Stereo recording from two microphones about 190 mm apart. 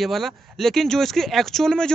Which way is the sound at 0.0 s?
Centre (ahead or behind).